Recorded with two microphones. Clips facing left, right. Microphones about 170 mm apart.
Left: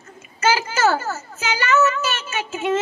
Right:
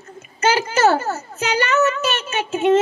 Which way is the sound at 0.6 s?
35° right (ahead or behind).